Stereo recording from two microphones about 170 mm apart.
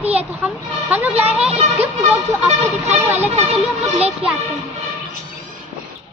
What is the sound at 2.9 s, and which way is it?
Speech, 15° right (ahead or behind).